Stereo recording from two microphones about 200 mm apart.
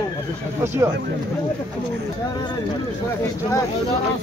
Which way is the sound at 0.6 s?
15° right (ahead or behind).